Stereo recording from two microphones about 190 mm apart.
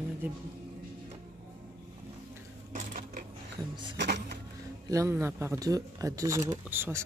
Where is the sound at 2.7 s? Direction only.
45° right (ahead or behind).